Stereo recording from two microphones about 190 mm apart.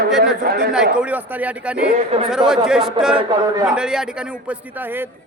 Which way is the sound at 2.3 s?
Centre (ahead or behind).